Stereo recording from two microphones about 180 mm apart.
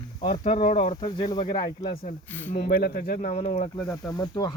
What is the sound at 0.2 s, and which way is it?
Speech, 35° left (ahead or behind).